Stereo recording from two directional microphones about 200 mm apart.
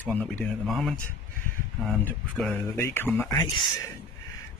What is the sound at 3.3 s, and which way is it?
Speech, 20° left (ahead or behind).